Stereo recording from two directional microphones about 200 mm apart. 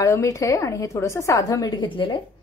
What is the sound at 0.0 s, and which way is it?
A woman's voice, 15° left (ahead or behind).